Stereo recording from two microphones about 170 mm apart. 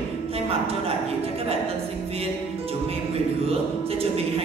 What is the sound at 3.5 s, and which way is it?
Music, 35° right (ahead or behind).